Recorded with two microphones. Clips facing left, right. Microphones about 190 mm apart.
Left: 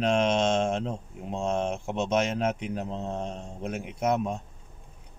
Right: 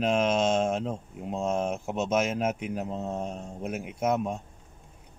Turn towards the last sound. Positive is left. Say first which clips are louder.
# even
turn(degrees=-5)  # may be behind; listen again after turning